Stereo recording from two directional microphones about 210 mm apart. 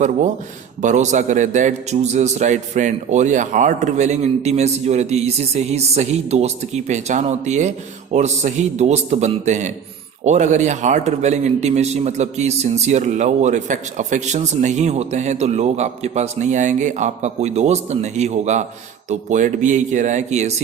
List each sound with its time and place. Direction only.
0.8 s speech: 35° right (ahead or behind)